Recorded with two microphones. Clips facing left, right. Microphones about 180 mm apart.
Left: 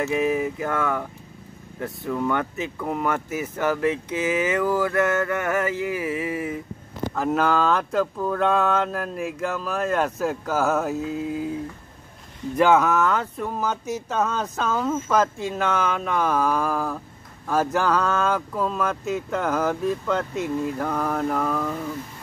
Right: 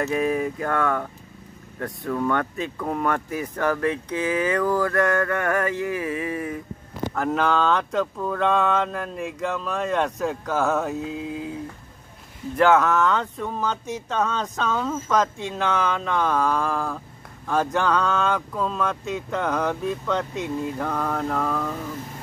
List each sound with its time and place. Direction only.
0.1 s speech: 10° left (ahead or behind)
3.8 s speech: 20° left (ahead or behind)
4.3 s speech: 10° left (ahead or behind)
12.5 s speech: 10° left (ahead or behind)